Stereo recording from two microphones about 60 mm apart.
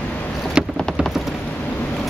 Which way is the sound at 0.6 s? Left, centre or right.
Centre.